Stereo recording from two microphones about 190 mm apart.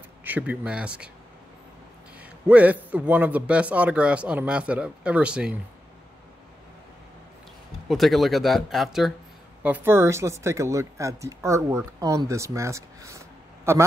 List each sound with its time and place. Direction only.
0.2 s speech: 10° right (ahead or behind)
2.1 s speech: 5° right (ahead or behind)
7.9 s speech: centre (ahead or behind)